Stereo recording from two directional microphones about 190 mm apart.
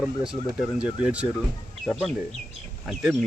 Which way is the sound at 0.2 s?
5° right (ahead or behind).